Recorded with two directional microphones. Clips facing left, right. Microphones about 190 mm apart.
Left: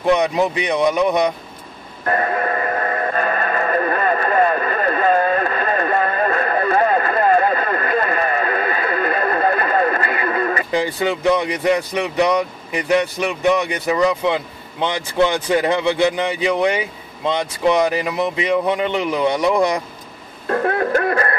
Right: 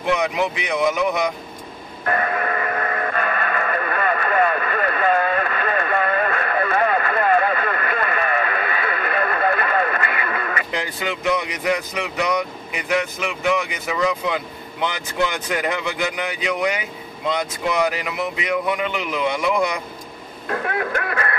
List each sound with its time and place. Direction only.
0.1 s speech: 30° left (ahead or behind)
2.0 s train: 35° left (ahead or behind)
14.0 s speech: 30° left (ahead or behind)
20.4 s music: 35° left (ahead or behind)